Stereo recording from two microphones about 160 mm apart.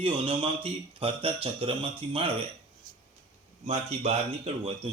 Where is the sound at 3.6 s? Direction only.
40° right (ahead or behind).